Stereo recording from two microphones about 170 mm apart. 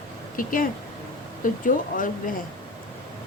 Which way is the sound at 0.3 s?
55° left (ahead or behind).